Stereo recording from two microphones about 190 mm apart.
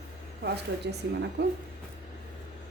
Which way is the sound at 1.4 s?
65° right (ahead or behind).